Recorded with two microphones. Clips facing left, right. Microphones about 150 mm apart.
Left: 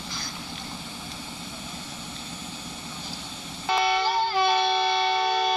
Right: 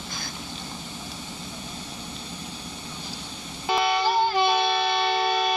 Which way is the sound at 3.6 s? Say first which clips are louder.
Right 1 dB; 15° right (ahead or behind).